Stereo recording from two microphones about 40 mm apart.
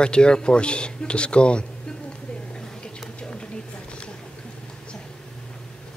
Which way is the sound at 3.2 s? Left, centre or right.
Left.